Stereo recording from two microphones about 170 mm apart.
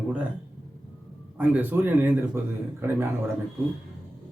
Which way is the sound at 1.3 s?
10° right (ahead or behind).